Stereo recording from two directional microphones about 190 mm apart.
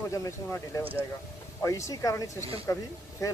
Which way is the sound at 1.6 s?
15° left (ahead or behind).